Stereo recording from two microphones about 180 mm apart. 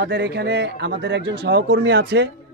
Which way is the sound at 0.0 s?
80° right.